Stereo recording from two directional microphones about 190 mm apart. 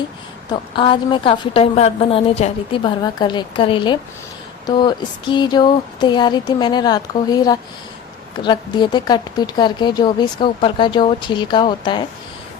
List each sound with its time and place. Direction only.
0.8 s speech: 25° left (ahead or behind)